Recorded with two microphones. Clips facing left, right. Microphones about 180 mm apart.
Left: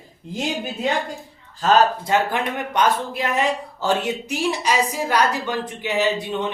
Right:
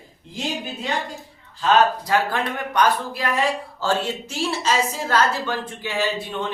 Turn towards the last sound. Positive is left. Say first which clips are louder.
# left 3 dB
turn(degrees=20)  # may be behind; listen again after turning